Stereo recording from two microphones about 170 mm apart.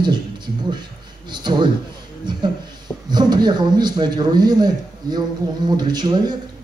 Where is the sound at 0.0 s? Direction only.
25° right (ahead or behind).